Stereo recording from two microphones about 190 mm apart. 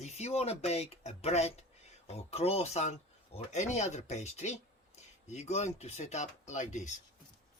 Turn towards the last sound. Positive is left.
turn(degrees=40)  # may be behind; listen again after turning